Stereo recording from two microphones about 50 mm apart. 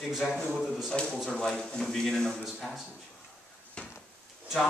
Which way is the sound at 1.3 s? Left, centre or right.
Centre.